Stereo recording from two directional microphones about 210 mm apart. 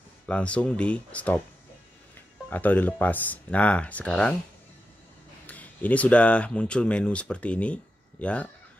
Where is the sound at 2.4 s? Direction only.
10° left (ahead or behind).